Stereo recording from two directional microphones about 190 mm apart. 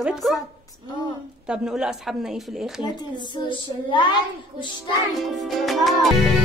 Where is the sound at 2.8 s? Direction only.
20° left (ahead or behind).